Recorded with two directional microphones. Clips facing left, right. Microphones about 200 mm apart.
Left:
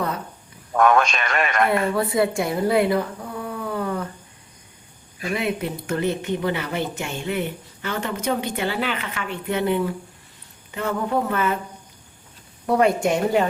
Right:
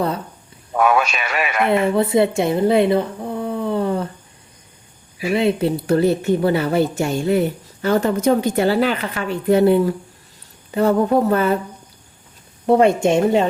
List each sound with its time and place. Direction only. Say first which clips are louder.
0.7 s a man's voice: right 1 dB; 5° right (ahead or behind)
1.7 s speech: right 5 dB; 25° right (ahead or behind)
5.3 s a woman's voice: right 8 dB; 30° right (ahead or behind)
12.6 s a woman's voice: right 5 dB; 25° right (ahead or behind)